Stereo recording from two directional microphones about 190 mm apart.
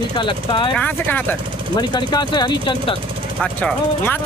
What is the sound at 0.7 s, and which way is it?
Speech, 10° left (ahead or behind).